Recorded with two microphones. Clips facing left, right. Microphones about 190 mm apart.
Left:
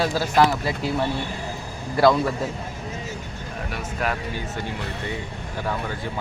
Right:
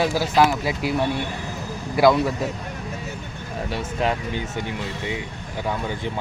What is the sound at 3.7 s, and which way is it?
A man's voice, 25° right (ahead or behind).